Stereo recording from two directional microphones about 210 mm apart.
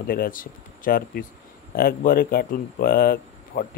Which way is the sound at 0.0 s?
45° left (ahead or behind).